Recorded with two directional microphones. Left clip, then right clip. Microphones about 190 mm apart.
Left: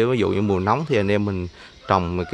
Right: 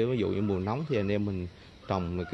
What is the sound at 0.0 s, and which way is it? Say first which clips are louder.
Speech: left 9 dB; 25° left (ahead or behind).